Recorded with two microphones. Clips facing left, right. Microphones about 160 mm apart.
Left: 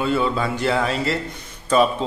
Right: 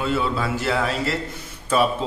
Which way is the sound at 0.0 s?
Centre (ahead or behind).